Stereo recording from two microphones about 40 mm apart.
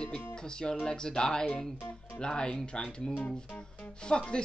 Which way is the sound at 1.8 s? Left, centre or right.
Left.